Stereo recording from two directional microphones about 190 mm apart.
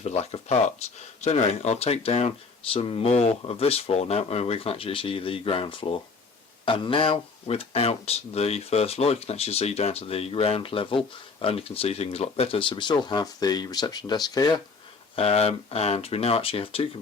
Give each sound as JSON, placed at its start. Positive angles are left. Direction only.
{"t": 0.0, "sound": "speech", "side_deg": 35}
{"t": 15.1, "sound": "speech", "side_deg": 30}